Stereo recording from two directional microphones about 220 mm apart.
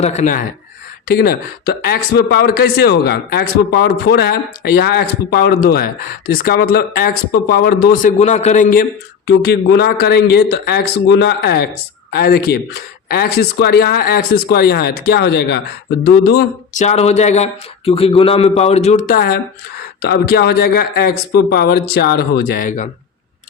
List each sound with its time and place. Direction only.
0.0 s speech: 30° left (ahead or behind)
1.0 s speech: 45° left (ahead or behind)
8.2 s speech: 30° left (ahead or behind)
16.8 s a man's voice: 30° left (ahead or behind)